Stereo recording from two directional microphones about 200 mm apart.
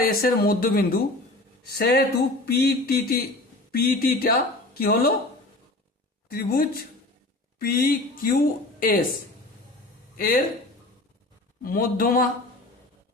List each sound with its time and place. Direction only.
0.0 s a woman's voice: 50° left (ahead or behind)
6.2 s a woman's voice: 50° left (ahead or behind)
10.2 s a woman's voice: 45° left (ahead or behind)
11.6 s a woman's voice: 45° left (ahead or behind)